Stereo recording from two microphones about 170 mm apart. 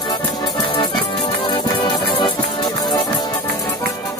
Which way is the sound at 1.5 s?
25° left (ahead or behind).